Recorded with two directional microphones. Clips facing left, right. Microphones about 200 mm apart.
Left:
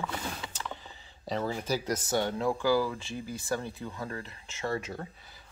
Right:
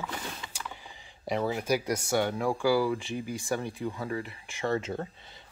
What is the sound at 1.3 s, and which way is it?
Speech, 15° right (ahead or behind).